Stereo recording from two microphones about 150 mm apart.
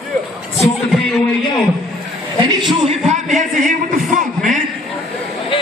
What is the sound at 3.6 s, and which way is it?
Music, 60° right (ahead or behind).